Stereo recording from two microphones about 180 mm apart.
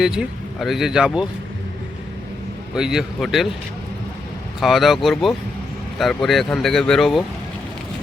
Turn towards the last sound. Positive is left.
turn(degrees=0)  # may be behind; listen again after turning